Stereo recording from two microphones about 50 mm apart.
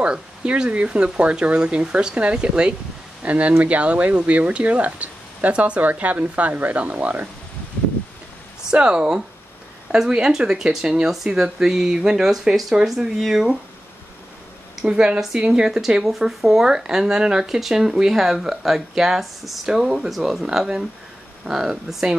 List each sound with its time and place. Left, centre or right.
0.0 s speech: centre
8.7 s speech: centre
14.8 s speech: centre
21.5 s speech: centre